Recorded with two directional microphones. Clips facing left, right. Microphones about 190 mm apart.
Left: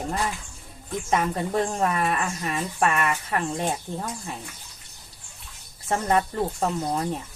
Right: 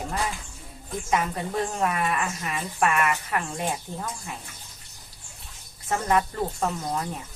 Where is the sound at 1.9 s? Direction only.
35° left (ahead or behind).